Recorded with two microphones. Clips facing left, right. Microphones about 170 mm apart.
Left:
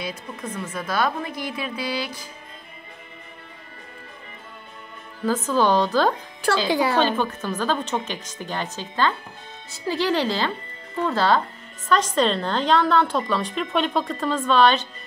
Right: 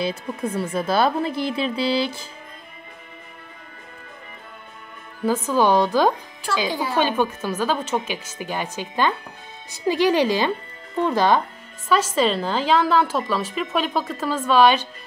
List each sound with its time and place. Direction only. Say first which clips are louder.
0.0 s speech: right 7 dB; 30° right (ahead or behind)
5.2 s speech: right 1 dB; 10° right (ahead or behind)
6.7 s a woman's voice: left 5 dB; 75° left (ahead or behind)
7.0 s speech: right 1 dB; 10° right (ahead or behind)
12.2 s a woman's voice: right 1 dB; 5° right (ahead or behind)